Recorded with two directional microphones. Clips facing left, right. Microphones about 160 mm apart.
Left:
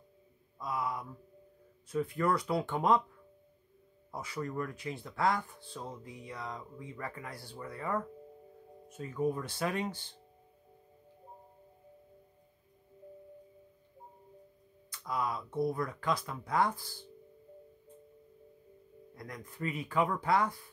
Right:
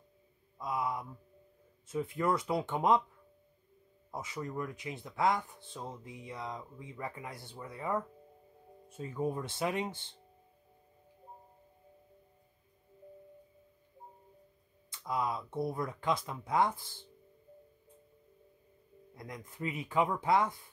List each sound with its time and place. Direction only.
0.6 s speech: 20° right (ahead or behind)
4.1 s speech: 20° right (ahead or behind)
14.9 s speech: 20° right (ahead or behind)
19.1 s speech: 20° right (ahead or behind)